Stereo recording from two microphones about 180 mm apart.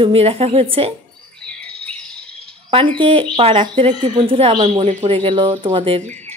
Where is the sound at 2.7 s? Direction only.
30° right (ahead or behind).